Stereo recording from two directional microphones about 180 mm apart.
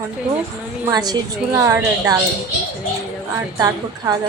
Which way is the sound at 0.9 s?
20° right (ahead or behind).